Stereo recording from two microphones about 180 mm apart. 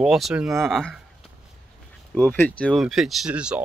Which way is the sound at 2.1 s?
10° left (ahead or behind).